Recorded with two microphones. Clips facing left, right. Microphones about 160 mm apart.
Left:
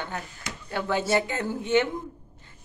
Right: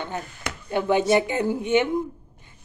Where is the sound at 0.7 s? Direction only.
20° right (ahead or behind).